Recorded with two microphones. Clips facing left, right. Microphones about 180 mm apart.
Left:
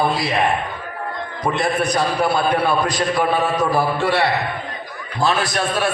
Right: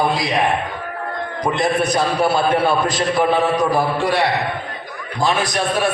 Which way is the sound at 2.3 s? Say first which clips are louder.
Right 1 dB; 25° right (ahead or behind).